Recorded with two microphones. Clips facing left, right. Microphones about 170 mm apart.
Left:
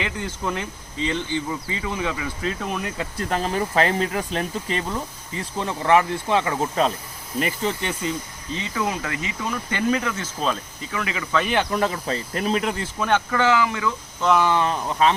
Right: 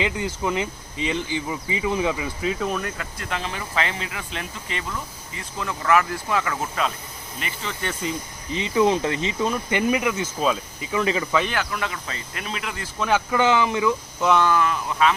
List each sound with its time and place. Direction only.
0.0 s speech: 15° right (ahead or behind)
2.4 s speech: 10° right (ahead or behind)
3.2 s speech: 40° left (ahead or behind)
8.0 s speech: centre (ahead or behind)
8.5 s speech: 20° right (ahead or behind)
10.9 s speech: 30° right (ahead or behind)
11.7 s speech: 35° left (ahead or behind)
13.0 s speech: 5° right (ahead or behind)
13.3 s speech: 20° right (ahead or behind)
14.4 s speech: 25° left (ahead or behind)